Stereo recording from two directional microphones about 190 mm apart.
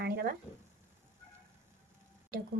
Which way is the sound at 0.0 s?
60° right (ahead or behind).